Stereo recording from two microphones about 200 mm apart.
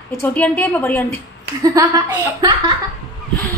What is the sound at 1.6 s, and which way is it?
Speech, 20° right (ahead or behind).